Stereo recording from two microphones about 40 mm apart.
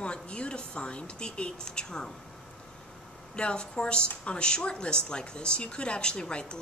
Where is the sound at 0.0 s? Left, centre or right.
Left.